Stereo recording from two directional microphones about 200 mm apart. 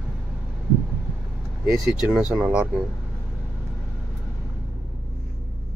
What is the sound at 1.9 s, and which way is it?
Speech, 5° right (ahead or behind).